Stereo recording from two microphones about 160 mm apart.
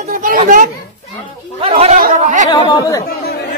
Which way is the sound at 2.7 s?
20° left (ahead or behind).